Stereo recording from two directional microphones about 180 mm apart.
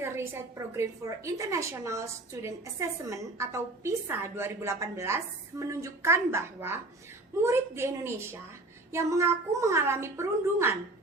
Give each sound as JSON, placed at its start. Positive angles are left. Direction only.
{"t": 0.0, "sound": "a woman's voice", "side_deg": -15}